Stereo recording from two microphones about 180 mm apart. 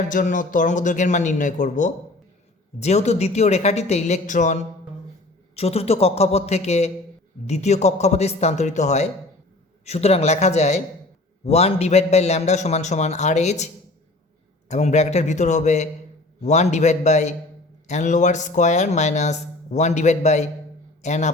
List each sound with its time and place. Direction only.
0.1 s speech: 45° left (ahead or behind)
14.7 s speech: 40° left (ahead or behind)